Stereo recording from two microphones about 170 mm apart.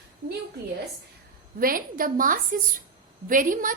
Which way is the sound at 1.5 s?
55° right (ahead or behind).